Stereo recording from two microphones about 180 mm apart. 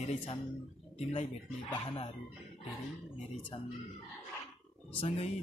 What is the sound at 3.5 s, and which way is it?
Speech, 35° left (ahead or behind).